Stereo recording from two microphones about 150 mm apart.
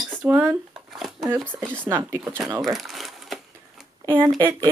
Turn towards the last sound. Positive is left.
turn(degrees=-20)  # may be behind; listen again after turning